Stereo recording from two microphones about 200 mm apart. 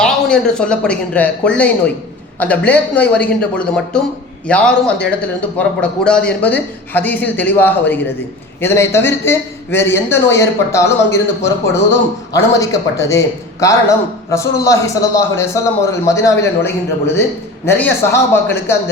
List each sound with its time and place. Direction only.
0.0 s a man's voice: 5° left (ahead or behind)